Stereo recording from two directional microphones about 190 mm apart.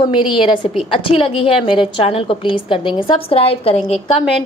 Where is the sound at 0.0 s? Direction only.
25° left (ahead or behind).